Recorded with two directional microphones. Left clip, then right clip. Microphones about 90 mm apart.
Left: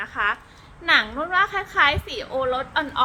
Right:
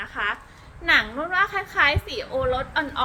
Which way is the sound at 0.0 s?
35° left (ahead or behind).